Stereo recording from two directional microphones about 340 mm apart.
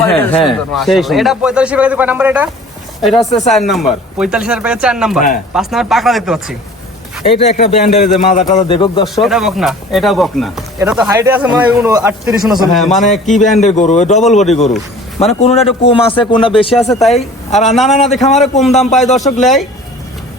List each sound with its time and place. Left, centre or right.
0.0 s a man's voice: centre
3.2 s a man's voice: centre
3.5 s speech: centre
7.3 s a man's voice: left
9.1 s speech: centre
13.1 s a man's voice: left
15.2 s a man's voice: centre
17.7 s speech: centre
18.1 s a man's voice: centre
18.6 s speech: centre